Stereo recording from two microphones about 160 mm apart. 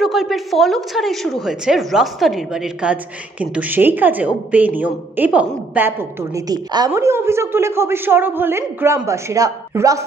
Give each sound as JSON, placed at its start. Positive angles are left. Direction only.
{"t": 0.0, "sound": "a woman's voice", "side_deg": 0}